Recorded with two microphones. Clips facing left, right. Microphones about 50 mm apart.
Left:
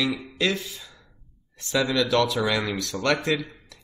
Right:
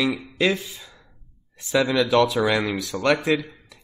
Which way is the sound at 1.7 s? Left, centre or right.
Centre.